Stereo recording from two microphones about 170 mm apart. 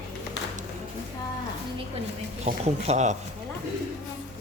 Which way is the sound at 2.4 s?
40° right (ahead or behind).